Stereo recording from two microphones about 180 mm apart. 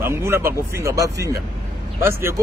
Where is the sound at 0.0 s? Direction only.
15° right (ahead or behind).